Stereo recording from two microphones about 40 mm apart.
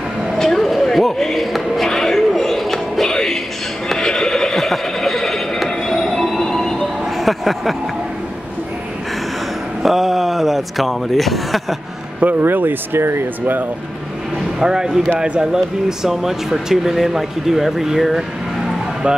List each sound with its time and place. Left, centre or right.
0.4 s a sound: centre
1.9 s music: centre
4.0 s neigh: centre
5.9 s train: centre
6.8 s a sound: centre
9.8 s a sound: centre
12.4 s speech: right
14.6 s speech: centre
19.0 s speech: right